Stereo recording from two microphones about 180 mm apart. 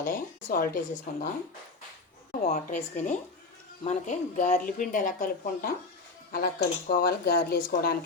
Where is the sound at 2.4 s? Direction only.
45° left (ahead or behind).